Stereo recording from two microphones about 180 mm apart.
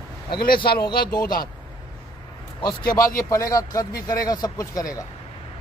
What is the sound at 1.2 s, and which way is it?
Speech, 55° left (ahead or behind).